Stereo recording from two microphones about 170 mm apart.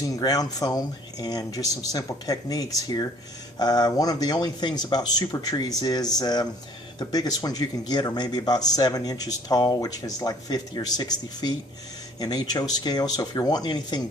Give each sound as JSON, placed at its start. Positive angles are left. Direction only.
{"t": 0.2, "sound": "a man's voice", "side_deg": 25}